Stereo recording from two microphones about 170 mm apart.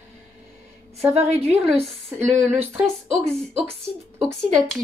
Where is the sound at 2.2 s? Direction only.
10° right (ahead or behind).